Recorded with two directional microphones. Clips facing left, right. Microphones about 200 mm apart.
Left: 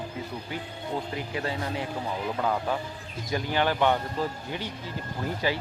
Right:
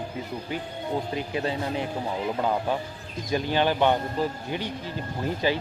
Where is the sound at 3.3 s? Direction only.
20° right (ahead or behind).